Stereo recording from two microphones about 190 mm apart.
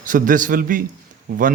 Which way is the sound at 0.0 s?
45° right (ahead or behind).